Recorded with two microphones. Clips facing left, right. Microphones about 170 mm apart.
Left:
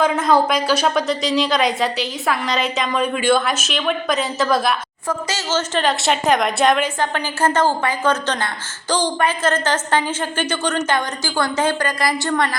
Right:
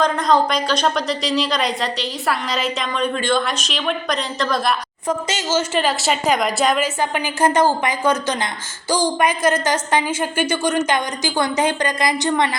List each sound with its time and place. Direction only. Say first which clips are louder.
0.0 s a woman's voice: left 1 dB; 5° left (ahead or behind)
5.0 s speech: right 2 dB; 15° right (ahead or behind)